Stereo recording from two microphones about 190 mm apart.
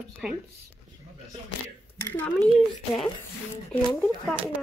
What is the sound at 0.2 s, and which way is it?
Speech, 5° right (ahead or behind).